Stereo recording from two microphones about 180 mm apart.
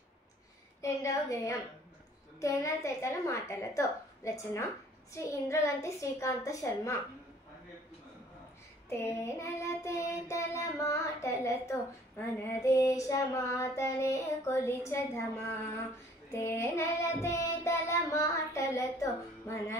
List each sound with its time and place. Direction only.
0.7 s child singing: 15° left (ahead or behind)
8.8 s child singing: 15° left (ahead or behind)